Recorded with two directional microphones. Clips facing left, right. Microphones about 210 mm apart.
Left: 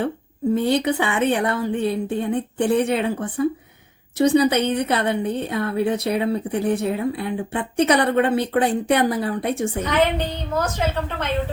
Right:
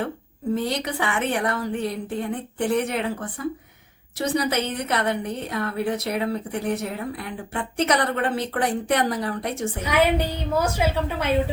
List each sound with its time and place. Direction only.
0.5 s a woman's voice: 25° left (ahead or behind)
9.8 s a woman's voice: 10° right (ahead or behind)